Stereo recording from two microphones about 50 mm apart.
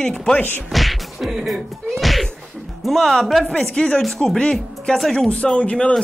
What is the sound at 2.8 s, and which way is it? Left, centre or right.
Speech, centre.